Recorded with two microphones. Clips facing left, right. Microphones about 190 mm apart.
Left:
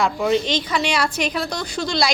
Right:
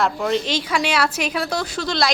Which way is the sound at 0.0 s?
Centre (ahead or behind).